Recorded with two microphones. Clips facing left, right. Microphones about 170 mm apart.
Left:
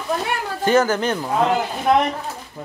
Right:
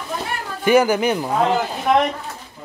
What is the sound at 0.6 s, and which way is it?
Speech, 10° right (ahead or behind).